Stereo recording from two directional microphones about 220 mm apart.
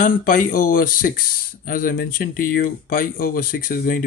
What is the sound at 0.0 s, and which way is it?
Speech, 40° left (ahead or behind).